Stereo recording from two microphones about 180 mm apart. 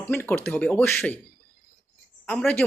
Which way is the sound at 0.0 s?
10° left (ahead or behind).